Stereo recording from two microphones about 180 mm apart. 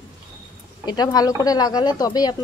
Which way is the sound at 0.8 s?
25° left (ahead or behind).